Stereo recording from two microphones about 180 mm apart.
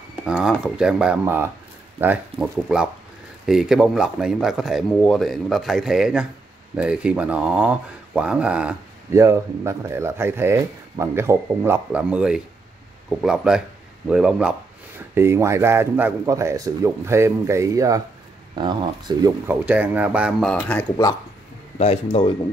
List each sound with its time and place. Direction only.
0.3 s speech: 5° right (ahead or behind); by 19.3 s 25° right (ahead or behind)
19.4 s speech: 10° right (ahead or behind); by 20.8 s 10° left (ahead or behind)
21.7 s speech: 35° left (ahead or behind)